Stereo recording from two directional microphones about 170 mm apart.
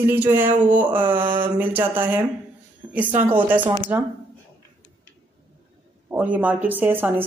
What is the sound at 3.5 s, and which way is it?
Speech, 10° right (ahead or behind).